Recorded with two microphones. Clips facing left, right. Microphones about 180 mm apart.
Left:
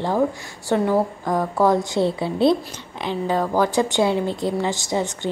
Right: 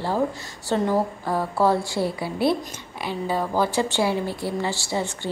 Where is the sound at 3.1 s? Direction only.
10° right (ahead or behind).